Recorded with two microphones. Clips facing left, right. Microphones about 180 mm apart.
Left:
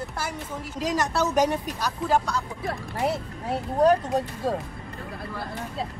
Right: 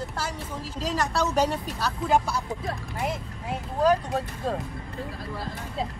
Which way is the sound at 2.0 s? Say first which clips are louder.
Even; centre (ahead or behind).